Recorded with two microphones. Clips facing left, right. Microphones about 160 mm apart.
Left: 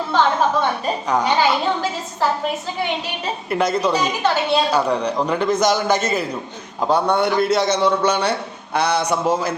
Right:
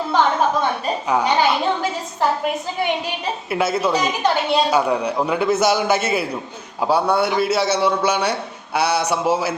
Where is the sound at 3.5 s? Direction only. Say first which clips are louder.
Left 1 dB; 5° right (ahead or behind).